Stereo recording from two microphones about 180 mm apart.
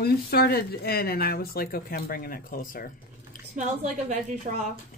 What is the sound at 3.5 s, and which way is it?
Speech, 40° right (ahead or behind).